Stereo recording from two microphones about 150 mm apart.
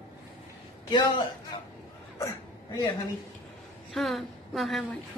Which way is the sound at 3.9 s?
Centre (ahead or behind).